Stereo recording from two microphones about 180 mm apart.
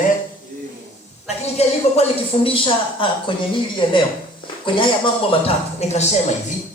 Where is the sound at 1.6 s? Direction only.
30° left (ahead or behind).